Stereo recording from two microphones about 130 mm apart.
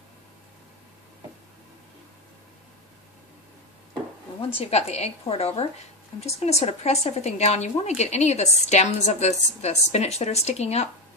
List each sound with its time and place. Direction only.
4.6 s a woman's voice: 50° left (ahead or behind)